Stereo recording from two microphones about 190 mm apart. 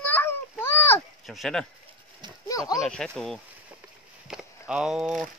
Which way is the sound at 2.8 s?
5° left (ahead or behind).